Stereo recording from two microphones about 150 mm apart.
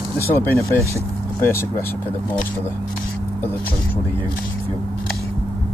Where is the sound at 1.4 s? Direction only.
15° left (ahead or behind).